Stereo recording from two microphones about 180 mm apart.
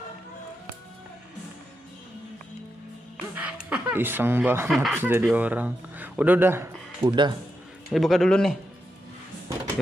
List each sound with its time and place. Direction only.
3.3 s speech: 10° right (ahead or behind)
7.0 s speech: 25° right (ahead or behind)
7.9 s a man's voice: centre (ahead or behind)